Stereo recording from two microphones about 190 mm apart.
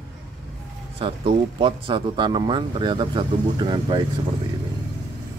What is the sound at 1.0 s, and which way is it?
Speech, 25° right (ahead or behind).